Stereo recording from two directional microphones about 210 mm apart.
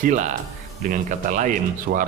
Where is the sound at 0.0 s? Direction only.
35° right (ahead or behind).